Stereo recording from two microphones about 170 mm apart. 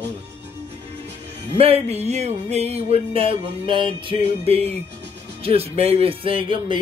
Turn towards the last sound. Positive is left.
turn(degrees=-30)  # may be behind; listen again after turning